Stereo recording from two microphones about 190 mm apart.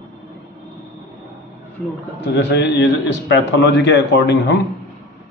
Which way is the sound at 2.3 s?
65° left (ahead or behind).